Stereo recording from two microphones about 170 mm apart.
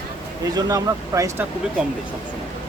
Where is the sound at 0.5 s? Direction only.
20° right (ahead or behind).